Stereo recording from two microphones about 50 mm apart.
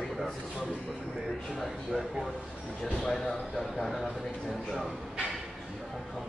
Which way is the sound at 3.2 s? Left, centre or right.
Centre.